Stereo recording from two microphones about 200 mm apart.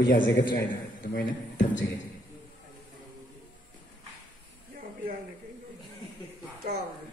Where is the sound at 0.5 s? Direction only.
50° left (ahead or behind).